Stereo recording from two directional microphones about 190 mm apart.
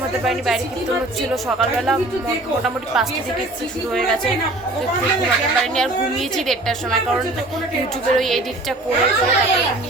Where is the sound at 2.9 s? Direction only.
5° right (ahead or behind).